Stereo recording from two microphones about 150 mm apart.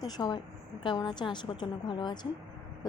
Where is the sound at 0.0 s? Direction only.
30° left (ahead or behind).